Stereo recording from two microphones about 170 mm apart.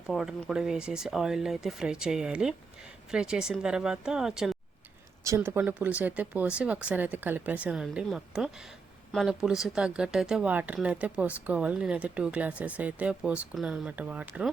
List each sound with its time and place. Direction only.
0.1 s speech: centre (ahead or behind)
5.2 s speech: 15° right (ahead or behind)